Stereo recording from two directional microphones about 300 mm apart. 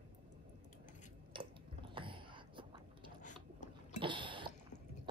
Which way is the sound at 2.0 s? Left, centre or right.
Centre.